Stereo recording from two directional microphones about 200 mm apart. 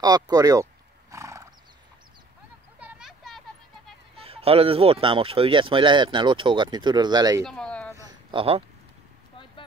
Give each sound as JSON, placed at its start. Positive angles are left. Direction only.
{"t": 0.0, "sound": "speech", "side_deg": -20}
{"t": 1.1, "sound": "roar", "side_deg": -15}
{"t": 2.8, "sound": "a sound", "side_deg": -5}
{"t": 4.2, "sound": "speech", "side_deg": -30}
{"t": 7.4, "sound": "a sound", "side_deg": 5}
{"t": 8.3, "sound": "speech", "side_deg": -25}